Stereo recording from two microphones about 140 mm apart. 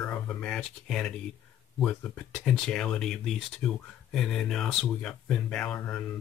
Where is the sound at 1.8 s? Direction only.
5° left (ahead or behind).